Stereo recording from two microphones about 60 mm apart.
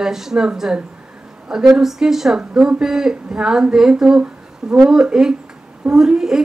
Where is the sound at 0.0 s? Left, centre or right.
Centre.